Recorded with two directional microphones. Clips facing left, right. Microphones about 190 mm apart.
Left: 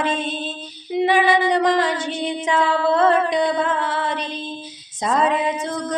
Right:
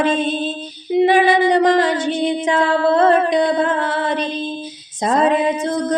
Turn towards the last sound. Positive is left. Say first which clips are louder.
# right 5 dB
turn(degrees=-35)  # may be behind; listen again after turning